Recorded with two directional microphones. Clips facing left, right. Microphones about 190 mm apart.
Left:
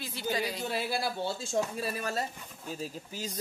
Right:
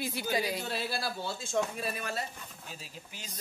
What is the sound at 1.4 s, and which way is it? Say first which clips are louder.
A man's voice: right 2 dB; 35° left (ahead or behind).